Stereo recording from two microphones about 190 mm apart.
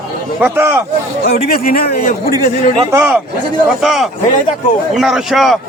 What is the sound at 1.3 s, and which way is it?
Speech, 50° left (ahead or behind).